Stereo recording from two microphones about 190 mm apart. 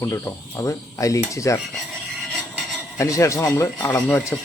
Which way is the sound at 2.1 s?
Centre (ahead or behind).